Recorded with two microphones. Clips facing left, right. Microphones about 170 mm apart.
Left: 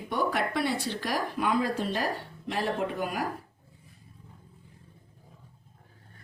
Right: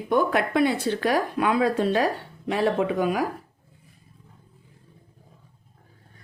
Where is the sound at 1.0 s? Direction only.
70° right (ahead or behind); by 3.2 s 85° right.